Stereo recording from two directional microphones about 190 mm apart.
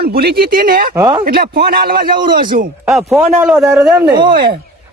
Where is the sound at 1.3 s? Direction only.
50° right (ahead or behind).